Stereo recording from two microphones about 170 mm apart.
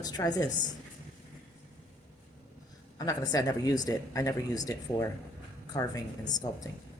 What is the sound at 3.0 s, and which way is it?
Speech, 20° left (ahead or behind).